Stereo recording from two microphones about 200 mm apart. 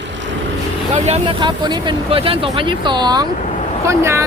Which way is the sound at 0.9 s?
30° right (ahead or behind).